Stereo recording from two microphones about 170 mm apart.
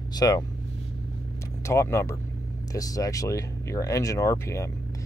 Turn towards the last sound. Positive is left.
turn(degrees=15)  # may be behind; listen again after turning